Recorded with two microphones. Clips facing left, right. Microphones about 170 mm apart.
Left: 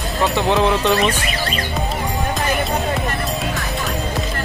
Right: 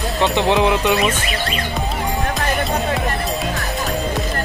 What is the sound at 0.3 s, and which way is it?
Speech, 20° right (ahead or behind).